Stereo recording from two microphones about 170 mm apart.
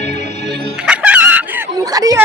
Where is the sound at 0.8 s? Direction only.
5° right (ahead or behind).